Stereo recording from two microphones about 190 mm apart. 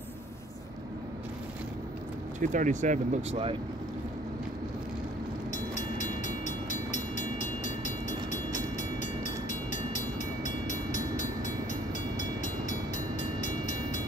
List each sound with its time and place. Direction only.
2.4 s speech: 40° right (ahead or behind)
5.5 s train: 40° left (ahead or behind)